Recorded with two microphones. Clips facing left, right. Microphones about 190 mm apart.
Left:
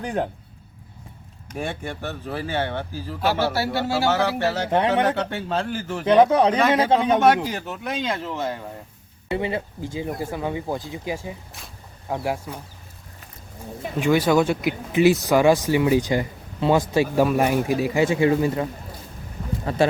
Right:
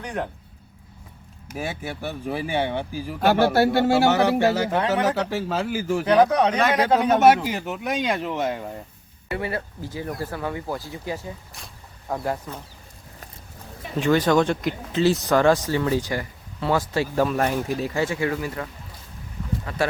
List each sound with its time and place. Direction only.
0.0 s speech: 30° left (ahead or behind)
1.5 s speech: 5° right (ahead or behind)
3.2 s speech: 50° right (ahead or behind)
4.0 s speech: 15° right (ahead or behind)
6.1 s speech: 25° left (ahead or behind)
6.6 s speech: centre (ahead or behind)
7.4 s speech: 10° right (ahead or behind)
9.3 s speech: 20° left (ahead or behind)
14.0 s speech: 10° left (ahead or behind); by 19.8 s 30° left (ahead or behind)